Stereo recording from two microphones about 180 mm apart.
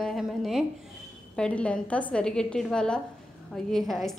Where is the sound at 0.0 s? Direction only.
Centre (ahead or behind).